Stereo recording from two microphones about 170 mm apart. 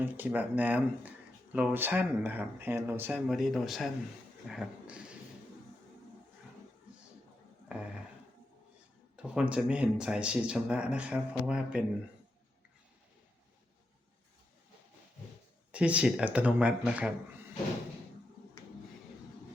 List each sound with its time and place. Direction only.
0.0 s speech: 10° right (ahead or behind)
3.2 s speech: centre (ahead or behind)
7.7 s a sound: 5° right (ahead or behind)
9.1 s speech: 5° right (ahead or behind)
15.7 s speech: 5° right (ahead or behind)